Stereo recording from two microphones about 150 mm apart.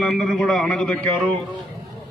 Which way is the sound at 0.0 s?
5° left (ahead or behind).